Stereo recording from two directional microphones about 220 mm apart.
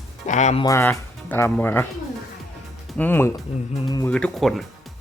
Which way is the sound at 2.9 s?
10° left (ahead or behind).